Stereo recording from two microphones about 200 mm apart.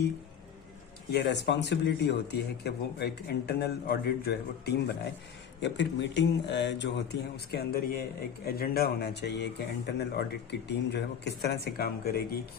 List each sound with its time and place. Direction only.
1.1 s a man's voice: 60° left (ahead or behind)